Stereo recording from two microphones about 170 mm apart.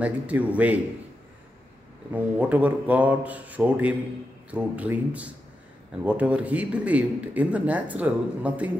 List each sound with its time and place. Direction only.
0.0 s speech: 10° right (ahead or behind)
2.5 s speech: 10° right (ahead or behind)